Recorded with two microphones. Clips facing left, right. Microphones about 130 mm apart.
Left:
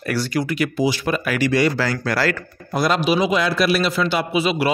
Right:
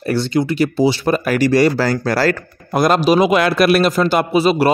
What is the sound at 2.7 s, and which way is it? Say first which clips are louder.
A man's voice: right 5 dB; 50° right (ahead or behind).